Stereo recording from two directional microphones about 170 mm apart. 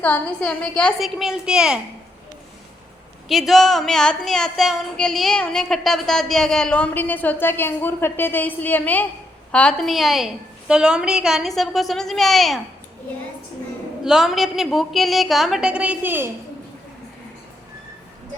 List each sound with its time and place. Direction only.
0.0 s speech: 5° left (ahead or behind)
3.2 s speech: centre (ahead or behind)
14.0 s speech: 5° right (ahead or behind)